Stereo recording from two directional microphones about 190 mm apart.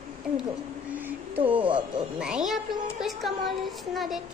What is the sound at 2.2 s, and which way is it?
A woman's voice, 5° right (ahead or behind).